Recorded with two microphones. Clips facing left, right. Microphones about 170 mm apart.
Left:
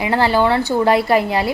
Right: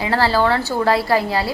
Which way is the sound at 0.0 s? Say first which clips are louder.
Left 2 dB; 20° left (ahead or behind).